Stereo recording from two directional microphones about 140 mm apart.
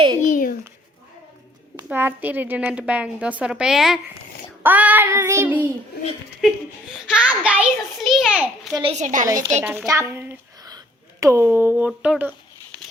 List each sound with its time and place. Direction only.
0.2 s a sound: 70° left (ahead or behind)
1.9 s a woman's voice: 15° right (ahead or behind)
7.1 s a woman's voice: 10° right (ahead or behind)
8.7 s a woman's voice: 35° right (ahead or behind)
9.0 s a woman's voice: 60° right (ahead or behind)
9.2 s a child's voice: 25° right (ahead or behind)
10.6 s a sound: 25° right (ahead or behind)
11.9 s speech: 5° right (ahead or behind)